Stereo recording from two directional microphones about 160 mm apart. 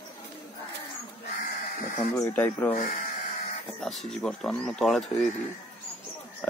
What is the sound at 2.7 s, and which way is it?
Speech, 55° left (ahead or behind).